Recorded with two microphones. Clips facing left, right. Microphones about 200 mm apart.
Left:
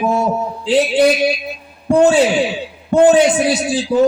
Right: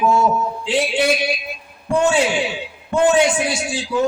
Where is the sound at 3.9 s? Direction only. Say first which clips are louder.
Left 6 dB; 50° left (ahead or behind).